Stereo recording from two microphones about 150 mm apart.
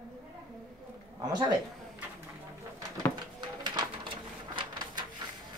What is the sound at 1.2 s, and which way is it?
Speech, 25° right (ahead or behind).